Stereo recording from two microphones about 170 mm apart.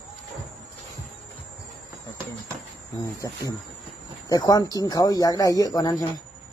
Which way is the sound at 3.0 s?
20° left (ahead or behind).